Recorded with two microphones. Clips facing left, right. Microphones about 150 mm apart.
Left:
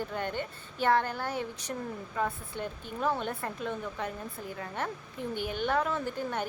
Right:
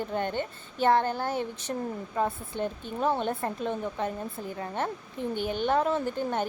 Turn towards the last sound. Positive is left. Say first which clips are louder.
# right 4 dB
turn(degrees=-25)  # may be behind; listen again after turning